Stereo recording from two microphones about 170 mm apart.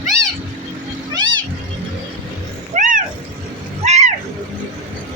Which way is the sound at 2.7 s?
50° right (ahead or behind).